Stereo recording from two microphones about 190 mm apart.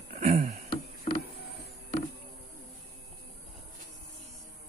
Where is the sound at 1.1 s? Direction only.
45° left (ahead or behind).